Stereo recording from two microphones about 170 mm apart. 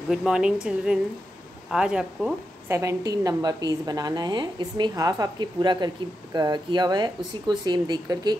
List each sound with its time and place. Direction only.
0.1 s speech: 5° right (ahead or behind)
2.7 s a woman's voice: 15° right (ahead or behind)